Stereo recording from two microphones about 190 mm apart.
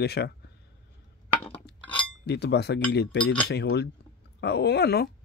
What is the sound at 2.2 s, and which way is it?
Speech, 60° left (ahead or behind).